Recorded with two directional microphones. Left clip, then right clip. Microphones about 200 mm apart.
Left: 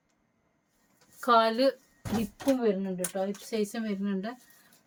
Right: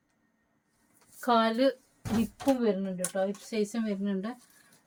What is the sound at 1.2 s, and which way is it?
Speech, 25° left (ahead or behind).